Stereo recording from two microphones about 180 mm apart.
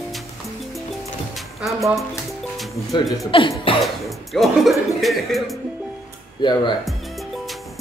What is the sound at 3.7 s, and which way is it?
Speech, centre (ahead or behind).